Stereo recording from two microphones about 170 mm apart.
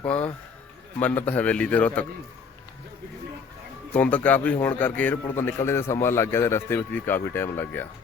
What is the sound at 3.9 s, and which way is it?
Speech, 10° left (ahead or behind).